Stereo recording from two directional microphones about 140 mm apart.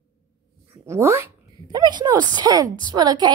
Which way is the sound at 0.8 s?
20° right (ahead or behind).